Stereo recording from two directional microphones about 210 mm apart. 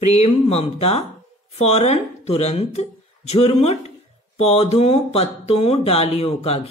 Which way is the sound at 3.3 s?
30° left (ahead or behind).